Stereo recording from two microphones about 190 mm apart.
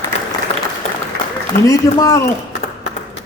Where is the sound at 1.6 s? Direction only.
15° left (ahead or behind).